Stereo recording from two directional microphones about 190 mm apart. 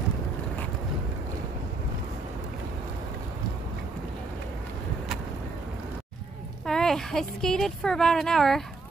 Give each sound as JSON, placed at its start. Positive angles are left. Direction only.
{"t": 6.6, "sound": "speech", "side_deg": 5}